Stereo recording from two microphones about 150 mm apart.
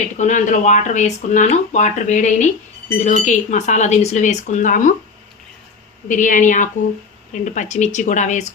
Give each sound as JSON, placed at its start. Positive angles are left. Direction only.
{"t": 0.2, "sound": "speech", "side_deg": 55}
{"t": 6.1, "sound": "speech", "side_deg": 60}